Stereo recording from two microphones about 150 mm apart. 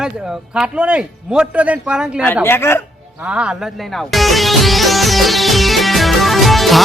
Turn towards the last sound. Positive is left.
turn(degrees=0)  # may be behind; listen again after turning